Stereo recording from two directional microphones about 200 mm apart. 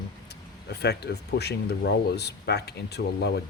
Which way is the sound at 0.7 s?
55° left (ahead or behind).